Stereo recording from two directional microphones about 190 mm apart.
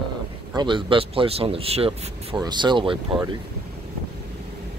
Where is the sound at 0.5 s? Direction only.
25° right (ahead or behind).